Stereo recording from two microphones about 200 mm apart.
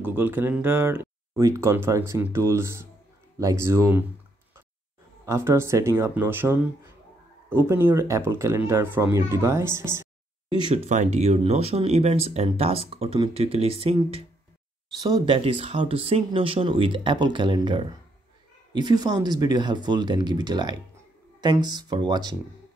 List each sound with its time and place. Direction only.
0.0 s speech: 10° right (ahead or behind)
5.2 s speech: 15° right (ahead or behind)
10.7 s speech: 35° right (ahead or behind); by 22.3 s 20° right (ahead or behind)